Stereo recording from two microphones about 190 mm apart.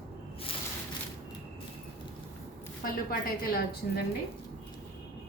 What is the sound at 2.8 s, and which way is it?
A woman's voice, 50° left (ahead or behind).